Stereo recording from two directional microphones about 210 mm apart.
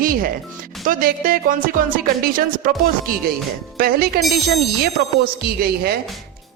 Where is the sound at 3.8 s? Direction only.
45° right (ahead or behind).